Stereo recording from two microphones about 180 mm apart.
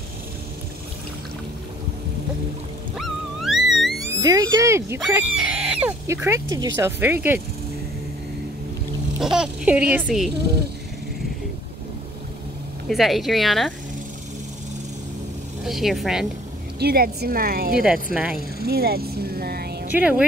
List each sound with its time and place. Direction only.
3.0 s music: centre (ahead or behind)
4.1 s speech: 20° right (ahead or behind)
5.0 s speech: 5° right (ahead or behind)
9.2 s speech: 5° right (ahead or behind)
12.8 s speech: centre (ahead or behind)
15.6 s speech: centre (ahead or behind)
16.8 s speech: 60° right (ahead or behind)
18.1 s speech: 5° right (ahead or behind)
18.7 s speech: 60° right (ahead or behind)
19.9 s speech: 5° right (ahead or behind)